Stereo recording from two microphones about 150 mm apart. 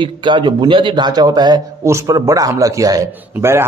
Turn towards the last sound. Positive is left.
turn(degrees=-15)  # may be behind; listen again after turning